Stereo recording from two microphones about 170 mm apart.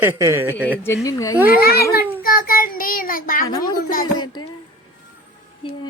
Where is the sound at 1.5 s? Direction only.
65° left (ahead or behind).